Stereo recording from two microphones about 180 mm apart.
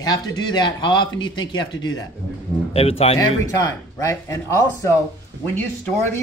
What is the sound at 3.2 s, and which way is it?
Speech, 20° left (ahead or behind).